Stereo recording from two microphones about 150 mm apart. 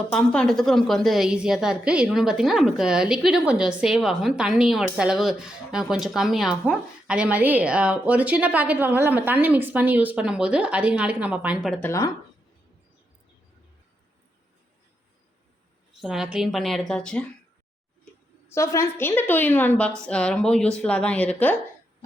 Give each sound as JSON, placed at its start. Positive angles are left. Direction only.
{"t": 0.1, "sound": "a woman's voice", "side_deg": 5}
{"t": 11.9, "sound": "speech", "side_deg": 20}
{"t": 16.0, "sound": "a woman's voice", "side_deg": 0}
{"t": 18.5, "sound": "speech", "side_deg": 20}